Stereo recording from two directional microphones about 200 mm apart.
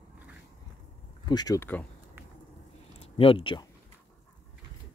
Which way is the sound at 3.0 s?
25° left (ahead or behind).